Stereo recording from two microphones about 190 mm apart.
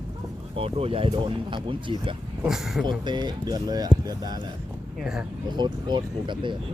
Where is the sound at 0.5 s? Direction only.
30° right (ahead or behind).